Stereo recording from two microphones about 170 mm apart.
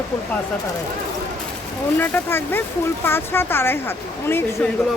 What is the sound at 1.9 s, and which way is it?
Speech, 10° left (ahead or behind).